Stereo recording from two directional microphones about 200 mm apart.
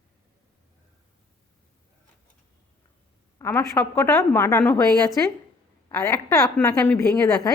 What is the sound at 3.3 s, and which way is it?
A woman's voice, 10° left (ahead or behind).